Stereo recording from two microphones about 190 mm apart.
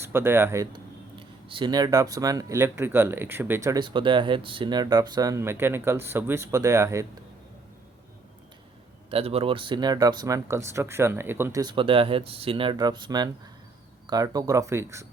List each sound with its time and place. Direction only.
0.0 s speech: 10° right (ahead or behind)
9.0 s speech: 30° right (ahead or behind); by 15.0 s 15° right (ahead or behind)